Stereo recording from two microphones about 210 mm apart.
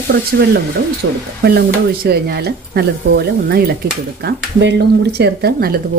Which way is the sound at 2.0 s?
50° right (ahead or behind).